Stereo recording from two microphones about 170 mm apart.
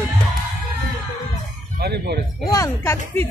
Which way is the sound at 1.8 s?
75° right (ahead or behind).